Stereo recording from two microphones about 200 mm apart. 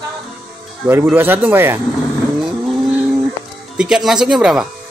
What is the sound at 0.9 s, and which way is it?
Speech, 10° right (ahead or behind).